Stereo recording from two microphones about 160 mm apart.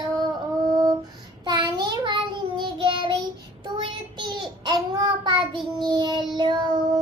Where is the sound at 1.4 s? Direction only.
30° right (ahead or behind).